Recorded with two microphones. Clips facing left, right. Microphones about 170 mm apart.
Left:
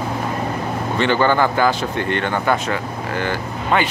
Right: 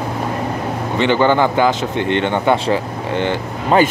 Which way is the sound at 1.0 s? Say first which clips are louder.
Right 3 dB; 15° right (ahead or behind).